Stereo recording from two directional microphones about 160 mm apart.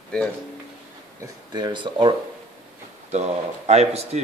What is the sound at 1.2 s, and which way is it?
Speech, 25° right (ahead or behind).